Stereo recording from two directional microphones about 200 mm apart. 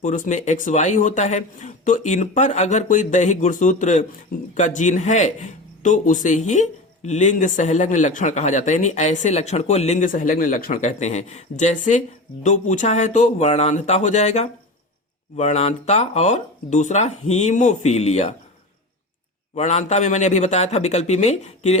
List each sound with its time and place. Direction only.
0.0 s a man's voice: 40° left (ahead or behind)
19.5 s a man's voice: 35° left (ahead or behind)